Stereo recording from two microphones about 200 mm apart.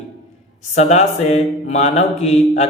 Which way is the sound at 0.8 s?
35° left (ahead or behind).